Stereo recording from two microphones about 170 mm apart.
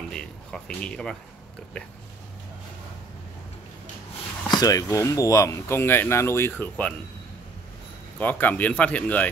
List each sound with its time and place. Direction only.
0.1 s speech: 5° left (ahead or behind)
4.5 s speech: 20° left (ahead or behind)
8.2 s speech: 10° left (ahead or behind)